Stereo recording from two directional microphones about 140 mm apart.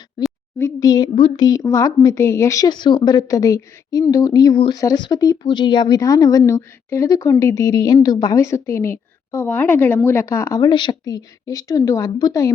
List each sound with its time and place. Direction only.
0.2 s a sound: 30° left (ahead or behind)
0.6 s speech: 25° left (ahead or behind)
10.6 s speech: 35° left (ahead or behind)